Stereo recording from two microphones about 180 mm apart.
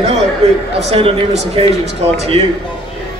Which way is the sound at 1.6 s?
30° right (ahead or behind).